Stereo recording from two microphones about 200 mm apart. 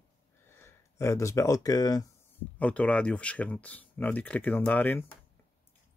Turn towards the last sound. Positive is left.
turn(degrees=10)  # may be behind; listen again after turning